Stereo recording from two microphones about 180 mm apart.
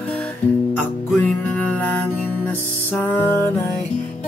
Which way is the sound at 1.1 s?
10° left (ahead or behind).